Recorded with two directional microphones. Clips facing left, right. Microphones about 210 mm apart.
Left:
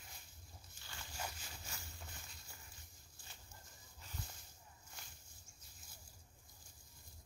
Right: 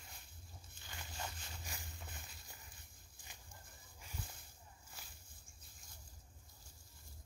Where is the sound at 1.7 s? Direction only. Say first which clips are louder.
Right 2 dB; 15° right (ahead or behind).